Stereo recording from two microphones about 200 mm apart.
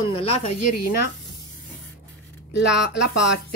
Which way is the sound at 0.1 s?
30° left (ahead or behind).